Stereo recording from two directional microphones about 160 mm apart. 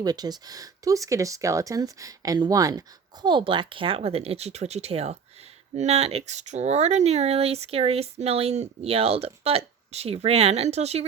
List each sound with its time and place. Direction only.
0.0 s speech: 25° right (ahead or behind); by 11.0 s 40° right (ahead or behind)